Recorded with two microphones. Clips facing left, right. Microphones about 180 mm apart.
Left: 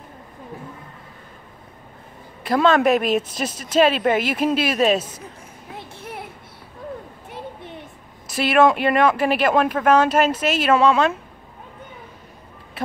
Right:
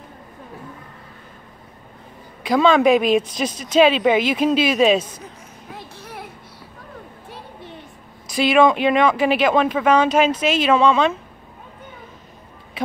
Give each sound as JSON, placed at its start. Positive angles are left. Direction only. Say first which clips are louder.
{"t": 2.4, "sound": "speech", "louder": "right 2 dB", "side_deg": 0}
{"t": 5.8, "sound": "a sound", "louder": "left 3 dB", "side_deg": 25}
{"t": 8.3, "sound": "speech", "louder": "right 1 dB", "side_deg": 5}